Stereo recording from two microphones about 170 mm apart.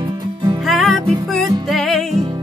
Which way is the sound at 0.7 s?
Centre (ahead or behind).